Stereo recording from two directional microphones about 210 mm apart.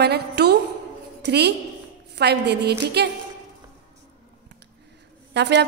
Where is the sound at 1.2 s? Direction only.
55° right (ahead or behind).